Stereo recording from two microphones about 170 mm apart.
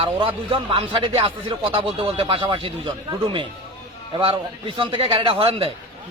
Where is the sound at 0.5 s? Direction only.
30° right (ahead or behind).